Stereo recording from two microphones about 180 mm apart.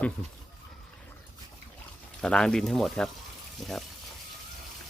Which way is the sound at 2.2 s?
5° left (ahead or behind).